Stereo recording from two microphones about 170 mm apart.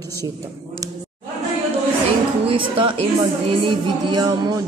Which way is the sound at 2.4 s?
30° right (ahead or behind).